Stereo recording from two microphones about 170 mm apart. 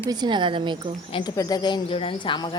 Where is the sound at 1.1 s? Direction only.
25° left (ahead or behind).